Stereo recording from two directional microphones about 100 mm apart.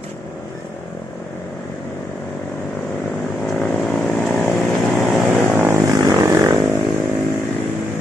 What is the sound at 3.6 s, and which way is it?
Vehicle, centre (ahead or behind).